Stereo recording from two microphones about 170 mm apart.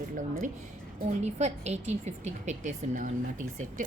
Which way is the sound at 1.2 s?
40° right (ahead or behind).